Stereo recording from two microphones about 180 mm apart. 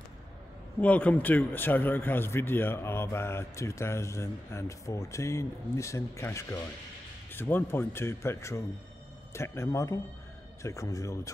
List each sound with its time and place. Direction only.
0.7 s speech: 10° left (ahead or behind)